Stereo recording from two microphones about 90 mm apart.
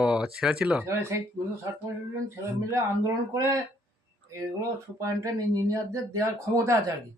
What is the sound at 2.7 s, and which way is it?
Speech, 35° right (ahead or behind).